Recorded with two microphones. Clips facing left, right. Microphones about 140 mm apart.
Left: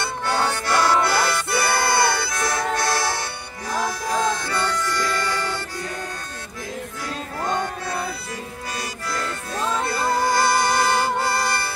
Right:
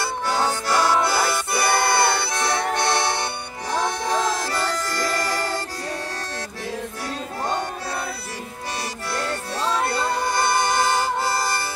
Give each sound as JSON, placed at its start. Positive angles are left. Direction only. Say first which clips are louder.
{"t": 0.0, "sound": "music", "louder": "even", "side_deg": -10}
{"t": 7.4, "sound": "music", "louder": "left 2 dB", "side_deg": -30}
{"t": 9.1, "sound": "music", "louder": "right 2 dB", "side_deg": -30}